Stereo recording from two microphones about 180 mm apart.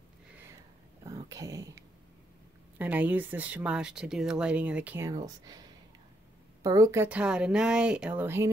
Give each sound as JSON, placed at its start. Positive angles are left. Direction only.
{"t": 1.0, "sound": "a sound", "side_deg": -20}
{"t": 2.8, "sound": "speech", "side_deg": -10}
{"t": 6.6, "sound": "speech", "side_deg": -20}